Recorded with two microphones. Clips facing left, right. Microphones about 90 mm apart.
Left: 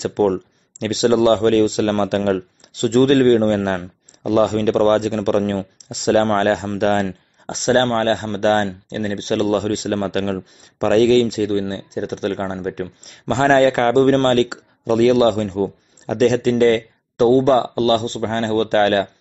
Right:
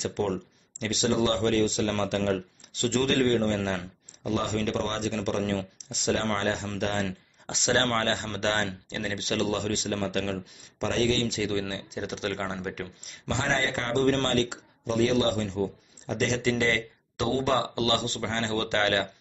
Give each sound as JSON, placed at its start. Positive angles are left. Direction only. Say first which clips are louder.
{"t": 0.0, "sound": "speech", "louder": "left 11 dB", "side_deg": 55}
{"t": 5.4, "sound": "speech", "louder": "left 7 dB", "side_deg": 40}
{"t": 5.9, "sound": "speech", "louder": "left 12 dB", "side_deg": 60}
{"t": 7.1, "sound": "speech", "louder": "left 7 dB", "side_deg": 45}